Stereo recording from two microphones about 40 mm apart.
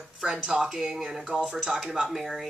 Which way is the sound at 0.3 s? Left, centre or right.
Centre.